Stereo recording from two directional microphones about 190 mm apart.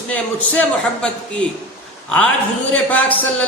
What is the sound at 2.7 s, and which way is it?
Speech, 10° left (ahead or behind).